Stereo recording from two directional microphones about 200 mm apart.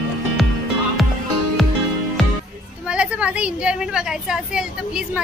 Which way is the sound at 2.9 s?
5° right (ahead or behind).